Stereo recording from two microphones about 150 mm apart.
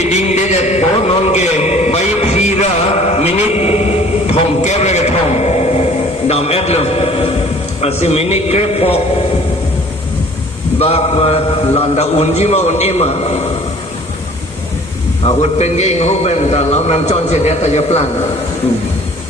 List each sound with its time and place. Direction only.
0.0 s a sound: 50° left (ahead or behind)
7.8 s a man's voice: 45° left (ahead or behind)
10.8 s a man's voice: 40° left (ahead or behind)
15.4 s a man's voice: 45° left (ahead or behind)